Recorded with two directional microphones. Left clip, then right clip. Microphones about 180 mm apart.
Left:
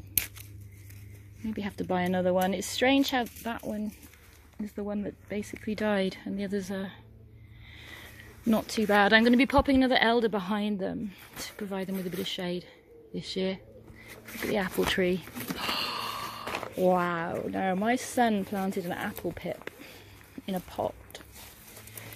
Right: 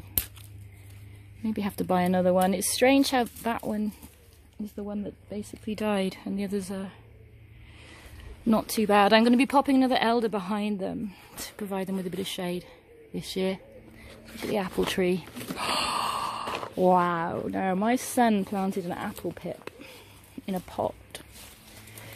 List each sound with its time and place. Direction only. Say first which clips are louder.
1.4 s speech: right 4 dB; 30° right (ahead or behind)
4.7 s speech: left 2 dB; centre (ahead or behind)
8.5 s speech: right 2 dB; 20° right (ahead or behind); by 11.0 s centre (ahead or behind)
11.3 s speech: right 2 dB; 10° right (ahead or behind)
15.5 s gasp: right 4 dB; 35° right (ahead or behind)
16.8 s speech: right 4 dB; 20° right (ahead or behind)